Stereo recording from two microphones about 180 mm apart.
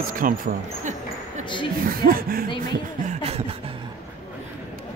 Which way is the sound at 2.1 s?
55° right (ahead or behind).